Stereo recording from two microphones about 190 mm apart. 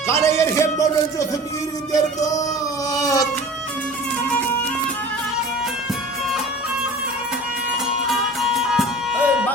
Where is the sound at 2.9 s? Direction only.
20° left (ahead or behind).